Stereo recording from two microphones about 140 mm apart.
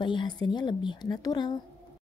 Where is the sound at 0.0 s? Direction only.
35° left (ahead or behind).